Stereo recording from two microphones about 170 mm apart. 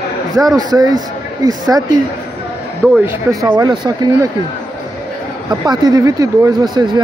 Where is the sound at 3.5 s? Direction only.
25° right (ahead or behind).